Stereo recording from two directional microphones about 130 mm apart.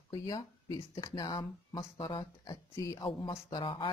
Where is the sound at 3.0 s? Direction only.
40° left (ahead or behind).